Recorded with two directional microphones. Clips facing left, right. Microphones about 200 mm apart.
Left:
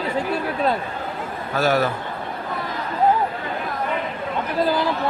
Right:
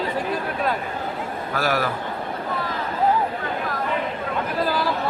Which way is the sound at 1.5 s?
25° left (ahead or behind).